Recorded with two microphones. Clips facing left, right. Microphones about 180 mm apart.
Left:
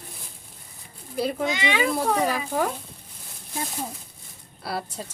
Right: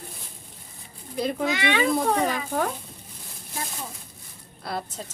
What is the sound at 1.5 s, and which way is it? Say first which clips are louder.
A woman's voice: right 1 dB; 15° left (ahead or behind).